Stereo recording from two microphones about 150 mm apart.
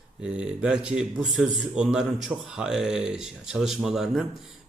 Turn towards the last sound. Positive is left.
turn(degrees=-5)  # may be behind; listen again after turning